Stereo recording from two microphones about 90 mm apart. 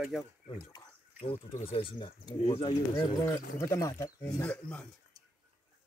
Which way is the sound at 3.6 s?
35° left (ahead or behind).